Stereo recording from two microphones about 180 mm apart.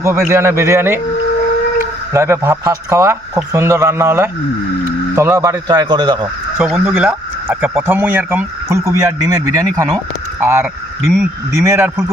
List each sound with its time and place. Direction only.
0.0 s speech: 15° right (ahead or behind)
6.6 s speech: 5° right (ahead or behind)